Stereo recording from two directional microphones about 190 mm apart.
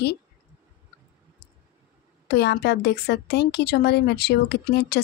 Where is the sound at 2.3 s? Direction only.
60° left (ahead or behind).